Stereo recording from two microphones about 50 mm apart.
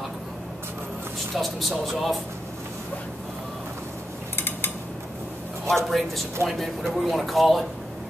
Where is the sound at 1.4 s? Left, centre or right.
Centre.